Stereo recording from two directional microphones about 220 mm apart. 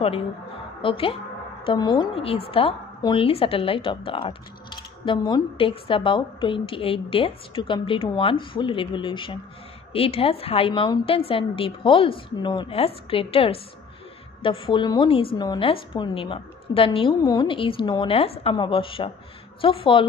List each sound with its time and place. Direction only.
0.8 s a woman's voice: 25° left (ahead or behind)